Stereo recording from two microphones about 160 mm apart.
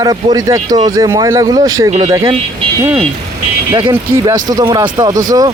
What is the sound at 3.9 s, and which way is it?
A man's voice, 20° right (ahead or behind).